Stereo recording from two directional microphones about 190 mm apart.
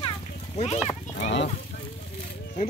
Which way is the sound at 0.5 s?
35° left (ahead or behind).